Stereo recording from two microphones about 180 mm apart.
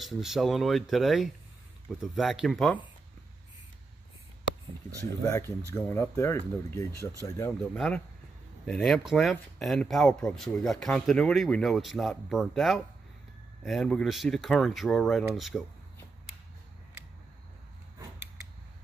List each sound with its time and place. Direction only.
0.0 s speech: centre (ahead or behind)
5.7 s speech: 15° left (ahead or behind)
7.7 s speech: 5° left (ahead or behind)